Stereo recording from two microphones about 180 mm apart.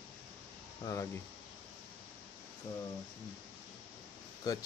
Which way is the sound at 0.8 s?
15° left (ahead or behind).